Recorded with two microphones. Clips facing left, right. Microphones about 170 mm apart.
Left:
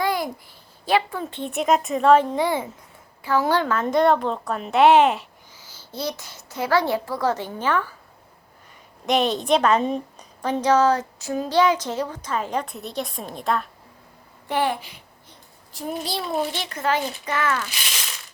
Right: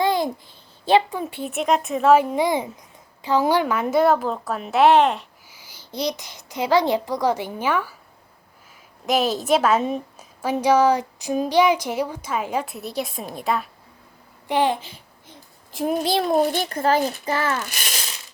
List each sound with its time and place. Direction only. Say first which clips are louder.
0.0 s a sound: right 3 dB; 25° right (ahead or behind)
0.9 s a woman's voice: right 4 dB; 20° right (ahead or behind); by 5.2 s 5° left (ahead or behind)
5.5 s a child's voice: right 2 dB; 10° right (ahead or behind)
9.0 s a woman's voice: even; centre (ahead or behind)
14.4 s a child's voice: right 3 dB; 15° right (ahead or behind)
16.2 s a child's voice: right 6 dB; 45° right (ahead or behind)
16.7 s speech: right 2 dB; 35° right (ahead or behind)
17.7 s a child's voice: right 2 dB; 50° right (ahead or behind)